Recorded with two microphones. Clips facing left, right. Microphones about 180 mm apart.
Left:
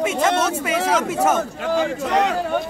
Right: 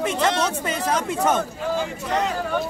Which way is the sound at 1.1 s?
5° left (ahead or behind).